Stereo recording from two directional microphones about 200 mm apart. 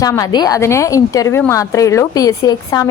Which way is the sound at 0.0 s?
15° left (ahead or behind).